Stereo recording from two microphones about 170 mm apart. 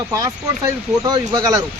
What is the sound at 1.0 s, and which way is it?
Speech, 20° right (ahead or behind).